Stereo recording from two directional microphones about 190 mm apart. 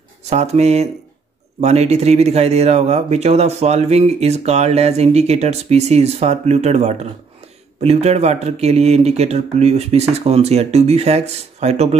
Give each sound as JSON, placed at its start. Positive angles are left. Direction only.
{"t": 0.3, "sound": "speech", "side_deg": -35}